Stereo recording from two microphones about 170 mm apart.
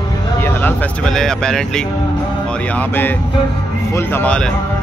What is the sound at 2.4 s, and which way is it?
Music, 5° left (ahead or behind).